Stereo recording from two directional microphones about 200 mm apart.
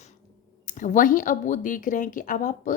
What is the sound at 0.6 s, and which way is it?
Speech, 40° left (ahead or behind).